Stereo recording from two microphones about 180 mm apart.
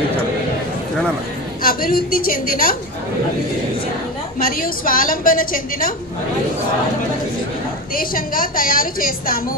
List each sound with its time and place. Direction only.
1.6 s a woman's voice: 55° left (ahead or behind)
4.5 s a woman's voice: 55° left (ahead or behind)
7.9 s a woman's voice: 50° left (ahead or behind)